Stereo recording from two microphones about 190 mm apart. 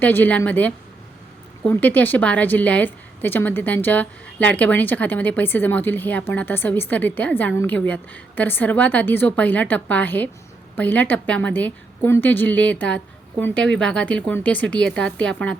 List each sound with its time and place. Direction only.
0.0 s a woman's voice: 10° left (ahead or behind)